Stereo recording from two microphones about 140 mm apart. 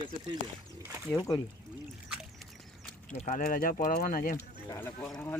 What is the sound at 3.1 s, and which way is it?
Speech, 70° left (ahead or behind).